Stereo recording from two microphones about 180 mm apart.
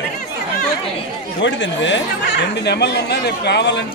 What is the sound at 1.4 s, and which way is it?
Speech, 90° left.